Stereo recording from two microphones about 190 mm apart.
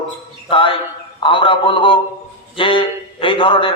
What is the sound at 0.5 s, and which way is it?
A man's voice, 30° left (ahead or behind).